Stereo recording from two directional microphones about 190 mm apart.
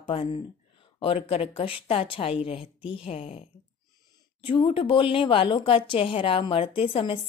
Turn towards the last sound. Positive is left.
turn(degrees=30)  # may be behind; listen again after turning